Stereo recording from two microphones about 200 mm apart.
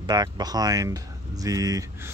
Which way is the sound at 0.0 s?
20° right (ahead or behind).